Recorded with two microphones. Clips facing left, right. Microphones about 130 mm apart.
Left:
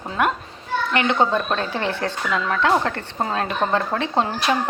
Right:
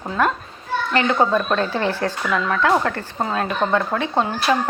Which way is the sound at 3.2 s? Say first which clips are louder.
Right 1 dB; 30° left (ahead or behind).